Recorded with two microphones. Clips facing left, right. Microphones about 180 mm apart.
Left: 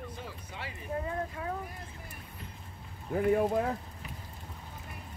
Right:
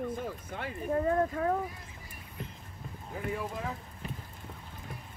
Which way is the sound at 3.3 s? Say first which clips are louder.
Left 10 dB; 55° left (ahead or behind).